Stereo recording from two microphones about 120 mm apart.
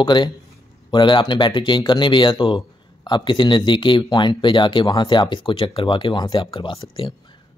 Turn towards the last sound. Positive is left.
turn(degrees=45)  # may be behind; listen again after turning